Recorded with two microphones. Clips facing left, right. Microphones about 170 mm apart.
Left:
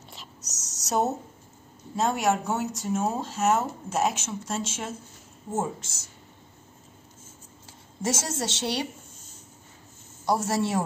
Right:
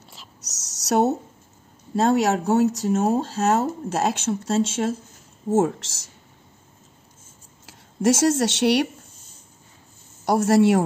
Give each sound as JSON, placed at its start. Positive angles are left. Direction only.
{"t": 0.6, "sound": "a sound", "side_deg": -70}
{"t": 2.0, "sound": "speech", "side_deg": -70}
{"t": 5.5, "sound": "speech", "side_deg": -90}
{"t": 7.6, "sound": "speech", "side_deg": -65}
{"t": 10.2, "sound": "speech", "side_deg": -65}